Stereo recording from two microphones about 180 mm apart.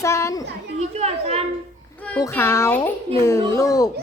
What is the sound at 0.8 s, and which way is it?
Children playing, 35° right (ahead or behind).